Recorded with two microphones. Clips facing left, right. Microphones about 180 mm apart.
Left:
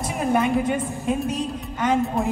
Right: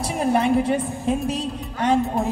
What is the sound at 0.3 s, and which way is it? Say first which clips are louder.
Speech: right 2 dB; 35° right (ahead or behind).